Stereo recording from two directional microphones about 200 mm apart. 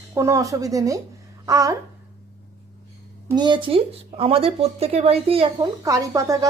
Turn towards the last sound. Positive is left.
turn(degrees=-15)  # may be behind; listen again after turning